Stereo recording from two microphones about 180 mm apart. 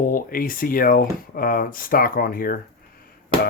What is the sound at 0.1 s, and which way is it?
Speech, 50° left (ahead or behind).